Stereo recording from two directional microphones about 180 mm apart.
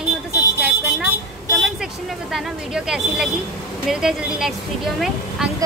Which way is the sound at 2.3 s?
Centre (ahead or behind).